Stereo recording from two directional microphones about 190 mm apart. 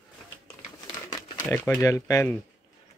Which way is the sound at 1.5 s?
10° left (ahead or behind).